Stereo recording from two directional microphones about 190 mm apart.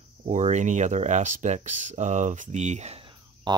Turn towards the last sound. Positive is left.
turn(degrees=-25)  # may be behind; listen again after turning